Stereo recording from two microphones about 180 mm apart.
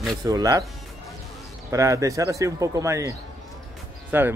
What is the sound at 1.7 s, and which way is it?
Speech, 15° right (ahead or behind).